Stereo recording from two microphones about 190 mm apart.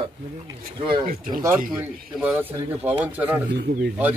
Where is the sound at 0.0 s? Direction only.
25° right (ahead or behind).